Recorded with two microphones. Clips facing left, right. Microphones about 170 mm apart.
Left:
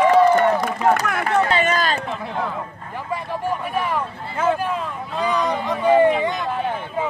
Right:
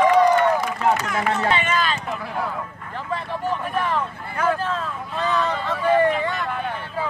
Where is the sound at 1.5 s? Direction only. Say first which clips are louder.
Left 3 dB; 40° left (ahead or behind).